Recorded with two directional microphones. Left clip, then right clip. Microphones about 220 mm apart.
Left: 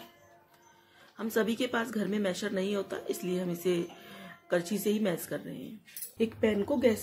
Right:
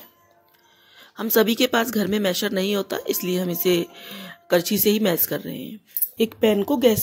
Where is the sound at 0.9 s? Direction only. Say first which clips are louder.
Right 11 dB; 40° right (ahead or behind).